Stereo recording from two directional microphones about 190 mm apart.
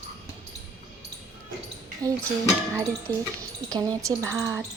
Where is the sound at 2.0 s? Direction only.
20° right (ahead or behind).